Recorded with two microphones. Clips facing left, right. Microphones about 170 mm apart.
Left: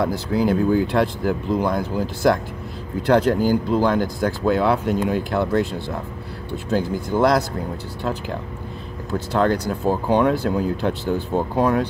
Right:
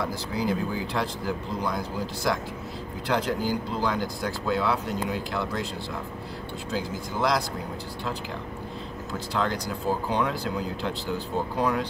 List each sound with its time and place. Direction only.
0.0 s speech: 55° left (ahead or behind)
9.3 s speech: 55° left (ahead or behind)